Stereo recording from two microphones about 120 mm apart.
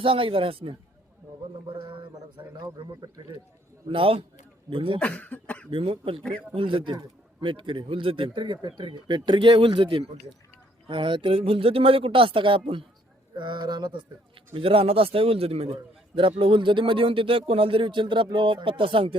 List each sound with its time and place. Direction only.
0.0 s speech: 50° right (ahead or behind)
2.6 s speech: 35° right (ahead or behind)
3.8 s speech: 45° right (ahead or behind)
4.9 s speech: 10° left (ahead or behind)
5.7 s speech: 50° right (ahead or behind)
14.5 s speech: 50° right (ahead or behind)